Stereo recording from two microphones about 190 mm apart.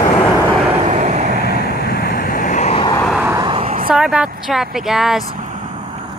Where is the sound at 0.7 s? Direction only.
40° right (ahead or behind).